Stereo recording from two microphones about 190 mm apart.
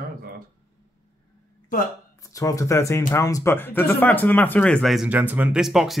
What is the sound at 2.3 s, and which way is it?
Speech, 15° left (ahead or behind).